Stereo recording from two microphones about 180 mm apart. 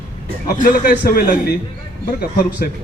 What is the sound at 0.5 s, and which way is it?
A man's voice, 50° left (ahead or behind).